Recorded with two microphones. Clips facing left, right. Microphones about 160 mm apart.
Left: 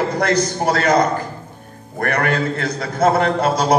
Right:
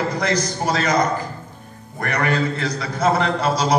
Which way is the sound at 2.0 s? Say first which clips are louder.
Left 2 dB; 55° left (ahead or behind).